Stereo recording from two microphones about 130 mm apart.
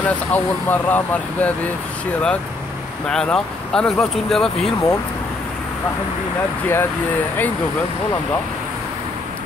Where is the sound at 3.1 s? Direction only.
5° left (ahead or behind).